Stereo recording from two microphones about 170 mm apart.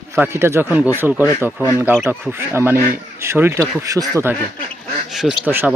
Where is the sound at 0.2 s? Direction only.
15° right (ahead or behind).